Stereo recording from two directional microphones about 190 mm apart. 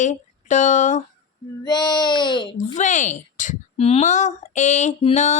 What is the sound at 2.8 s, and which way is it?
Child singing, 40° left (ahead or behind).